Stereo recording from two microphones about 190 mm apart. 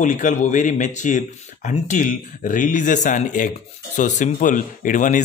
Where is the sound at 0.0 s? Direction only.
40° left (ahead or behind).